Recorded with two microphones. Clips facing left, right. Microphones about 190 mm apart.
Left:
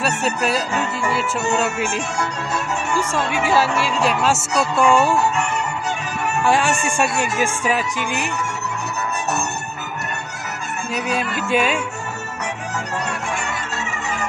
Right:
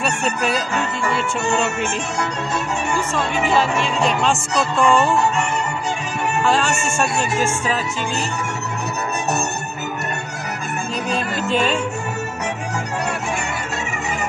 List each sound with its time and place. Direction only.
0.0 s music: 5° left (ahead or behind)
3.0 s music: 10° left (ahead or behind)
6.4 s speech: 10° left (ahead or behind)
6.8 s music: 15° left (ahead or behind)
11.4 s music: 10° left (ahead or behind)